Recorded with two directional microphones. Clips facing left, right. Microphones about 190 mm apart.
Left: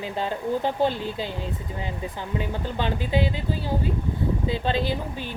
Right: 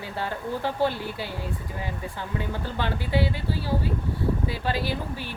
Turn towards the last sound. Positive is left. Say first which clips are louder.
# left 2 dB
turn(degrees=20)  # may be behind; listen again after turning